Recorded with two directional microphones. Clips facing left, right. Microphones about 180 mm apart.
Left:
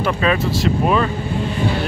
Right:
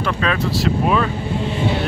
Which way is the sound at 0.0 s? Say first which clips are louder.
Left 2 dB; 5° left (ahead or behind).